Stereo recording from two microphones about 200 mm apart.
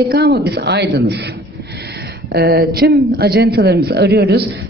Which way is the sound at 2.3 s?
50° right (ahead or behind).